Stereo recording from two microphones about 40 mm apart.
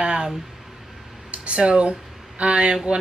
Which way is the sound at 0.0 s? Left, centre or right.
Right.